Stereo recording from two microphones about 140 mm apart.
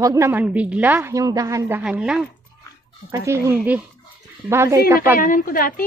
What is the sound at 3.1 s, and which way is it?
Speech, 20° right (ahead or behind).